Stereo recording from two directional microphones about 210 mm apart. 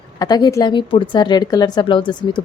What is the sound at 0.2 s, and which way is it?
Speech, 20° left (ahead or behind).